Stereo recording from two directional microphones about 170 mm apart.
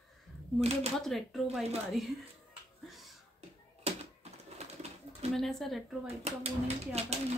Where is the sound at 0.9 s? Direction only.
Centre (ahead or behind).